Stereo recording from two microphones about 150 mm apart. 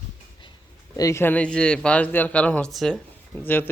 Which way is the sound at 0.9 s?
20° left (ahead or behind).